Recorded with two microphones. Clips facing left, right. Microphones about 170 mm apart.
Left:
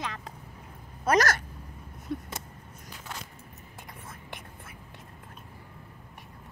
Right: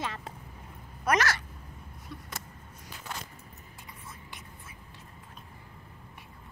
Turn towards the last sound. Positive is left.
turn(degrees=55)  # may be behind; listen again after turning